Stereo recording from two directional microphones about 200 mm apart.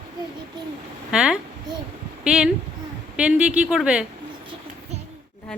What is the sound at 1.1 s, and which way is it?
A woman's voice, 5° right (ahead or behind).